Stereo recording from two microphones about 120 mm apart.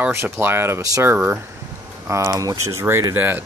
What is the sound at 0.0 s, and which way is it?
Speech, 20° right (ahead or behind).